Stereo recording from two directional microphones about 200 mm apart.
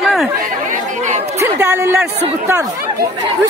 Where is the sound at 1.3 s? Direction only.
15° right (ahead or behind).